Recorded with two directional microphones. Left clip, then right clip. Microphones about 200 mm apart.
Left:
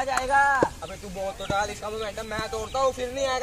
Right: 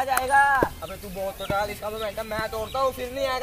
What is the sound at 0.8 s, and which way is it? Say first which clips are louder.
Speech: right 1 dB; 5° left (ahead or behind).